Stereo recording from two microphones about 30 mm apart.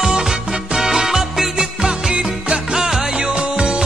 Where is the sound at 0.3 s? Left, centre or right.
Centre.